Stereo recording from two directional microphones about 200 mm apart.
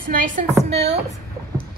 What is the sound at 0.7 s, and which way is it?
Speech, 30° right (ahead or behind).